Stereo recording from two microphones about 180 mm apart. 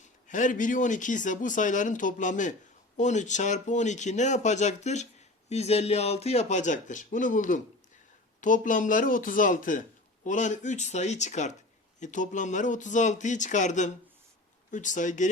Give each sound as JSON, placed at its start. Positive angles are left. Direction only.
{"t": 0.3, "sound": "speech", "side_deg": 45}